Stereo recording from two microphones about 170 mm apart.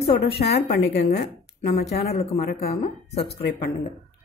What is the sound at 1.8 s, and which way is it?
Speech, 40° left (ahead or behind).